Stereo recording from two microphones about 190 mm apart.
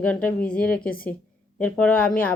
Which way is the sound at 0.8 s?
50° left (ahead or behind).